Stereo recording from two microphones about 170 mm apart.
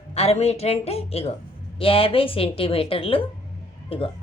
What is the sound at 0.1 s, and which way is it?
A woman's voice, 40° left (ahead or behind).